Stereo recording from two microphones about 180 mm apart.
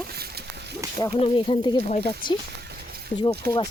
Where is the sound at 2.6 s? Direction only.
65° right (ahead or behind).